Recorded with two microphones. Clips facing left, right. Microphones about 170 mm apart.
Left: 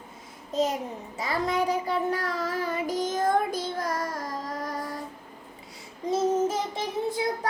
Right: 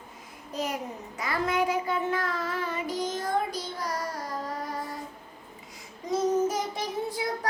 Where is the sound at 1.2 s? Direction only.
30° left (ahead or behind).